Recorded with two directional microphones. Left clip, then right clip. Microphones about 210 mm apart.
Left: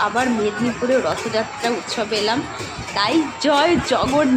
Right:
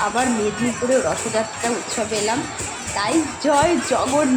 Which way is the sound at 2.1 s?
10° right (ahead or behind).